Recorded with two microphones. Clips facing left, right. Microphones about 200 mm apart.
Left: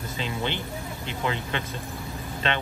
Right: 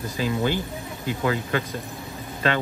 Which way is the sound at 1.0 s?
25° left (ahead or behind).